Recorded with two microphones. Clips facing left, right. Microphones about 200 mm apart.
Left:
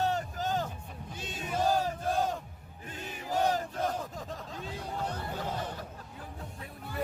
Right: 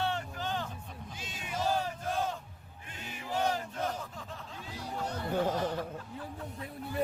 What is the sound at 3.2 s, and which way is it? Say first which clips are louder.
Chant: left 3 dB; 40° left (ahead or behind).